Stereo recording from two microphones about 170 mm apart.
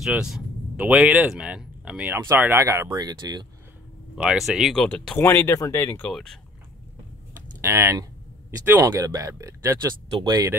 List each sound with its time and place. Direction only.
0.0 s speech: 5° right (ahead or behind); by 3.4 s 25° right (ahead or behind)
4.1 s speech: 5° right (ahead or behind)
5.2 s speech: 15° left (ahead or behind)
7.6 s speech: 15° right (ahead or behind)